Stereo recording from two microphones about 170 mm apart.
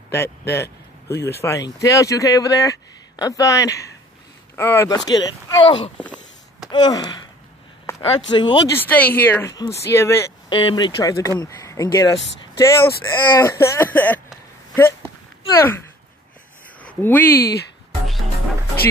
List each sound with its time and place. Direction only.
0.1 s speech: 15° left (ahead or behind)
5.9 s speech: 10° left (ahead or behind)
6.7 s speech: 25° left (ahead or behind)
7.9 s a sound: 15° left (ahead or behind)
8.3 s speech: 25° left (ahead or behind)
8.7 s speech: 10° left (ahead or behind)
10.5 s speech: 30° left (ahead or behind); by 14.2 s 10° left (ahead or behind)
15.5 s speech: 15° left (ahead or behind)
16.8 s speech: 10° left (ahead or behind)